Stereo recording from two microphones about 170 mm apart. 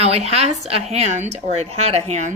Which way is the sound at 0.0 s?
40° right (ahead or behind).